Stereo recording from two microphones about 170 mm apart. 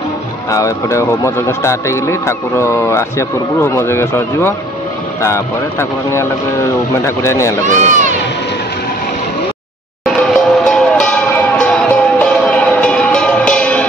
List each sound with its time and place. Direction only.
0.5 s speech: 20° left (ahead or behind)
7.6 s speech: 45° right (ahead or behind)
10.0 s music: centre (ahead or behind)